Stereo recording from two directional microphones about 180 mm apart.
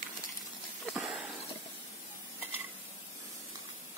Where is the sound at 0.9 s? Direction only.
5° right (ahead or behind).